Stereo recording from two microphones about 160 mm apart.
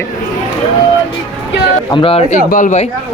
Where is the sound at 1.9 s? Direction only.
30° left (ahead or behind).